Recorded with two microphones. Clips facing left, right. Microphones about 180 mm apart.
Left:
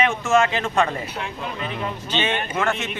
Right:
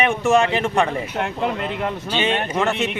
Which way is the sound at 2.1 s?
15° right (ahead or behind).